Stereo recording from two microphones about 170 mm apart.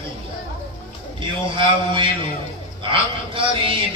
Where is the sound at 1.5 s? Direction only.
30° right (ahead or behind).